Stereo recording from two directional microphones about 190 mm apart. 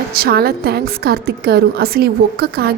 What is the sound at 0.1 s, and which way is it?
A woman's voice, 55° right (ahead or behind).